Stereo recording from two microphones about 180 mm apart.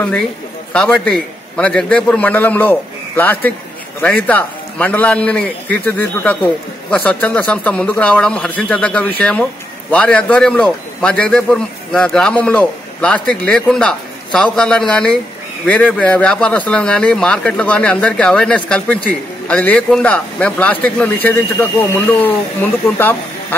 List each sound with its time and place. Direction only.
0.7 s a man's voice: 5° left (ahead or behind)